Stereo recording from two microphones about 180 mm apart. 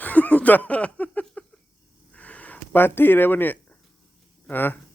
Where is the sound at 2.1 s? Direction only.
5° left (ahead or behind).